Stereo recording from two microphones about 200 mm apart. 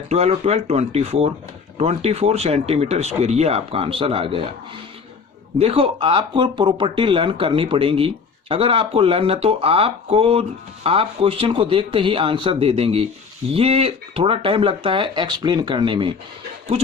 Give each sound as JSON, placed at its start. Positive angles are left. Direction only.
{"t": 0.1, "sound": "speech", "side_deg": -35}
{"t": 5.5, "sound": "speech", "side_deg": -30}